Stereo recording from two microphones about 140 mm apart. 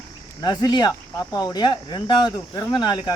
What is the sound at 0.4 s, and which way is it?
Cricket, 30° left (ahead or behind).